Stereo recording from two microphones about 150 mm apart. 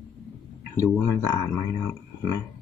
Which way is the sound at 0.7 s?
20° left (ahead or behind).